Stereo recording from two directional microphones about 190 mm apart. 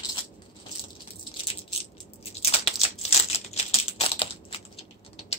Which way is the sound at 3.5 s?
35° left (ahead or behind).